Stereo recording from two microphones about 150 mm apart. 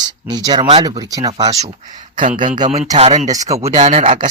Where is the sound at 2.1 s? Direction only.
60° right (ahead or behind).